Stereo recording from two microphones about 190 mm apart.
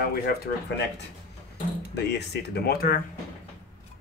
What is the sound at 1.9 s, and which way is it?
Speech, 60° left (ahead or behind).